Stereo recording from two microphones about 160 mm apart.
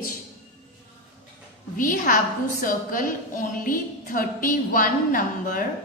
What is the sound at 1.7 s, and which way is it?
A woman's voice, 60° left (ahead or behind).